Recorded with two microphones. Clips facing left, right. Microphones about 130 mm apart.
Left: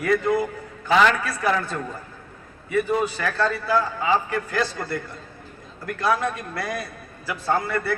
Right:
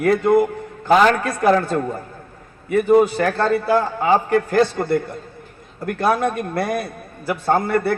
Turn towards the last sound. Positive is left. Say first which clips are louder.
# right 6 dB
turn(degrees=-55)  # may be behind; listen again after turning